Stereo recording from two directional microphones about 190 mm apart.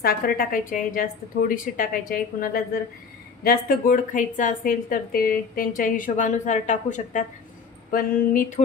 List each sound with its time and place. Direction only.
0.0 s a woman's voice: 50° left (ahead or behind)
7.9 s a woman's voice: 50° left (ahead or behind)